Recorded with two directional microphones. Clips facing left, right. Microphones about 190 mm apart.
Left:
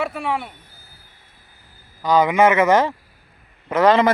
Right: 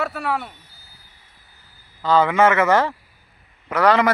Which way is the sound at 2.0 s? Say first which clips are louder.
Left 1 dB; 15° left (ahead or behind).